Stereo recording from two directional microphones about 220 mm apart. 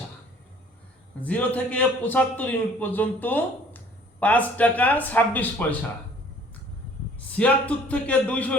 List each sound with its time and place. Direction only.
1.2 s a man's voice: 5° left (ahead or behind)
7.2 s a man's voice: 5° left (ahead or behind)